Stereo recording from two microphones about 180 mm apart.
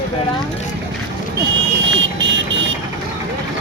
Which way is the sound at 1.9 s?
80° right.